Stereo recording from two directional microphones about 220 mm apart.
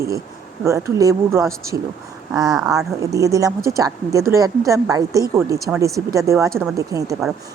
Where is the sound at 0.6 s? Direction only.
15° right (ahead or behind).